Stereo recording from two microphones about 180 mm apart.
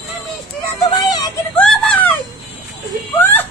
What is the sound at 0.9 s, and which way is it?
Music, 20° left (ahead or behind).